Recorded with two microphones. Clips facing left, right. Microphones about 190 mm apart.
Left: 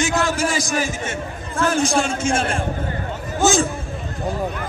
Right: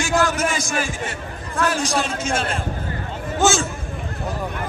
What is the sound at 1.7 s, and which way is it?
Speech, 25° left (ahead or behind).